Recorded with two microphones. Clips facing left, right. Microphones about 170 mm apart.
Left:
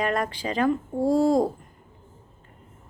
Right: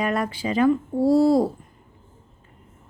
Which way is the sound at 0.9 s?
10° right (ahead or behind).